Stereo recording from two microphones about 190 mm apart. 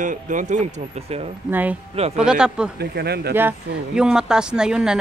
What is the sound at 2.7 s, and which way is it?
Speech, 60° right (ahead or behind).